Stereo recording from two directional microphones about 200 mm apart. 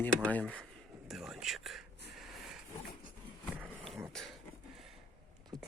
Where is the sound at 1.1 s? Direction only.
Centre (ahead or behind).